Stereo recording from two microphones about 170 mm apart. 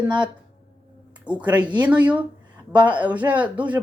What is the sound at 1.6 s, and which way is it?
Speech, 25° right (ahead or behind).